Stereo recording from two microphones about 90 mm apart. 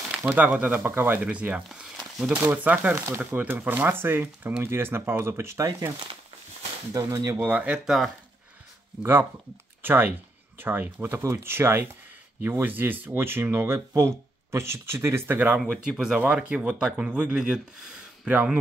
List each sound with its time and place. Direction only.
0.2 s speech: 15° right (ahead or behind); by 7.2 s 35° right (ahead or behind)
7.3 s speech: 15° right (ahead or behind)
7.8 s speech: 5° right (ahead or behind)
9.8 s speech: 25° right (ahead or behind)
15.3 s speech: 15° right (ahead or behind)
15.7 s speech: 5° right (ahead or behind)